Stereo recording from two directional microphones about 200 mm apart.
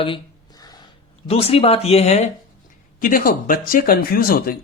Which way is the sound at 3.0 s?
45° left (ahead or behind).